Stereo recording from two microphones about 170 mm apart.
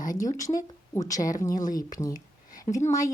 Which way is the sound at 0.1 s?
20° left (ahead or behind).